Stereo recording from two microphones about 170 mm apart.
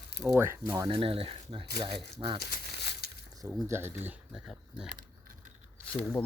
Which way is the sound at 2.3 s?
70° left (ahead or behind).